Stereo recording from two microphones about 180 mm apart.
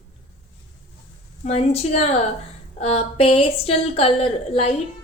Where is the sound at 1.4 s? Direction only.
35° left (ahead or behind).